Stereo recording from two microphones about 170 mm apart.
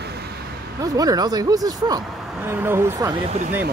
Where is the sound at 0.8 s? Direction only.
20° right (ahead or behind).